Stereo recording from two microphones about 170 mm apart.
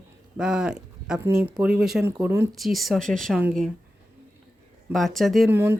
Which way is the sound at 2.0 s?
15° right (ahead or behind).